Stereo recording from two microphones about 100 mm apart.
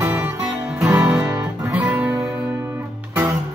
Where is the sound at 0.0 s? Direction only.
20° right (ahead or behind).